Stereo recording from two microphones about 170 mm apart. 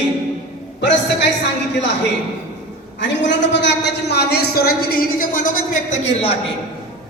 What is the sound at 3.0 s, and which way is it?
A man's voice, 90° left.